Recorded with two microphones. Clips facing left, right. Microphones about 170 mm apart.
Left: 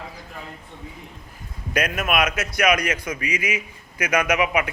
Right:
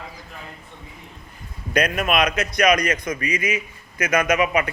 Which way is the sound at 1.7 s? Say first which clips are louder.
Right 2 dB; 5° left (ahead or behind).